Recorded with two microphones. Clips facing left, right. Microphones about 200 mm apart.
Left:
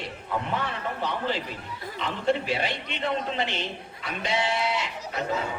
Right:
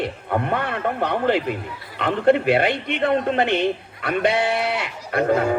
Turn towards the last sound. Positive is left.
turn(degrees=-65)  # may be behind; listen again after turning